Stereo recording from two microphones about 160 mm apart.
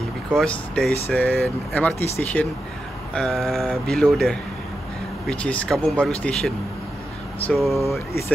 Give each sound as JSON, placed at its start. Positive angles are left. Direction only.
{"t": 0.4, "sound": "speech", "side_deg": 5}
{"t": 7.5, "sound": "speech", "side_deg": 0}